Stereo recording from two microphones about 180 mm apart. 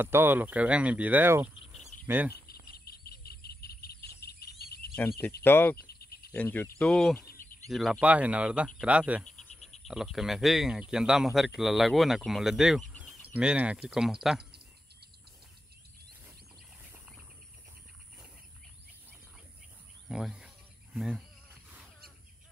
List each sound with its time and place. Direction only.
0.0 s speech: 10° right (ahead or behind)
2.3 s cricket: 60° left (ahead or behind)
5.4 s speech: 10° left (ahead or behind)
5.9 s insect: 60° left (ahead or behind)
6.3 s speech: 10° left (ahead or behind)
7.2 s a sound: 50° left (ahead or behind)
7.7 s speech: centre (ahead or behind)
9.2 s frog: 5° left (ahead or behind)
9.8 s speech: centre (ahead or behind)
20.1 s cricket: 5° right (ahead or behind)